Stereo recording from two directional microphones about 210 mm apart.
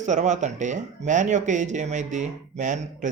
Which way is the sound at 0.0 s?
35° right (ahead or behind).